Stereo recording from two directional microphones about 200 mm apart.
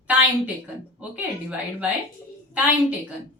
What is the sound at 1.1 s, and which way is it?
Speech, 5° right (ahead or behind).